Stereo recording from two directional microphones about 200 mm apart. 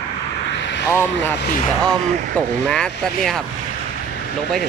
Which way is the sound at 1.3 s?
55° left (ahead or behind).